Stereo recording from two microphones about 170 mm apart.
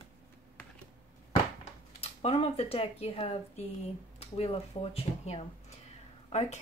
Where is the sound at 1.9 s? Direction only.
40° left (ahead or behind).